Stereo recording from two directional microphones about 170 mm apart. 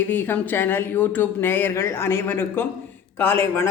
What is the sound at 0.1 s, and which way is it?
A man's voice, 10° left (ahead or behind).